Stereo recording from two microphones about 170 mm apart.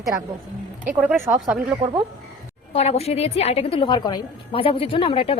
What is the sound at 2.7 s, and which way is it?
A woman's voice, 35° left (ahead or behind).